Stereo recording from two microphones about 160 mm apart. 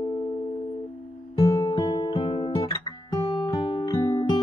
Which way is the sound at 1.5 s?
25° left (ahead or behind).